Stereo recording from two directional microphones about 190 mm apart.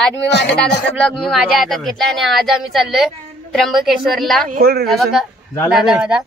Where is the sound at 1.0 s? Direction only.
5° left (ahead or behind).